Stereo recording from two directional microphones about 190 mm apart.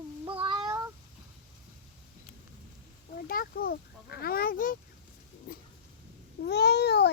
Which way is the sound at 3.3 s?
50° left (ahead or behind).